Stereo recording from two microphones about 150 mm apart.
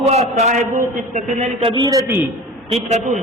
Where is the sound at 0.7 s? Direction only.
60° right (ahead or behind).